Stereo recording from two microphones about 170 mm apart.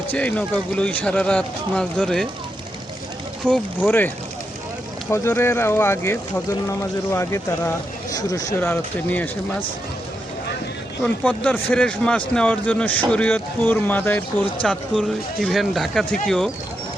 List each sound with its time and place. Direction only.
0.1 s speech: 10° left (ahead or behind)
3.4 s speech: 5° left (ahead or behind)
5.1 s speech: 15° left (ahead or behind)
8.5 s speech: 10° left (ahead or behind)
11.0 s speech: 5° left (ahead or behind)